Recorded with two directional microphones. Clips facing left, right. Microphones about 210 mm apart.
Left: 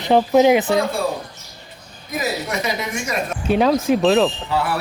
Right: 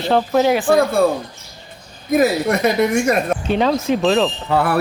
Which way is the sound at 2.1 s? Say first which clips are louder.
Right 9 dB; 55° right (ahead or behind).